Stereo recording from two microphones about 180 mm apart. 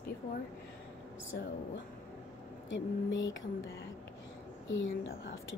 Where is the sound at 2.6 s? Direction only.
90° left.